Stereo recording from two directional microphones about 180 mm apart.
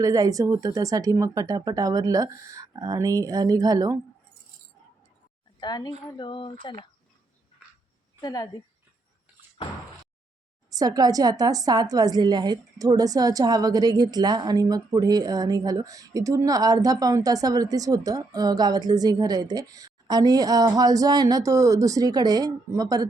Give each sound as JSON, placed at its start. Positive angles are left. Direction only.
{"t": 0.0, "sound": "a woman's voice", "side_deg": -20}
{"t": 5.5, "sound": "a woman's voice", "side_deg": 20}
{"t": 8.2, "sound": "speech", "side_deg": 20}
{"t": 10.7, "sound": "a woman's voice", "side_deg": -20}